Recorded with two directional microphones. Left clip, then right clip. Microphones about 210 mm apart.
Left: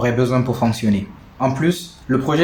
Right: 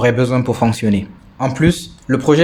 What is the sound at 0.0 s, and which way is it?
Speech, 45° right (ahead or behind).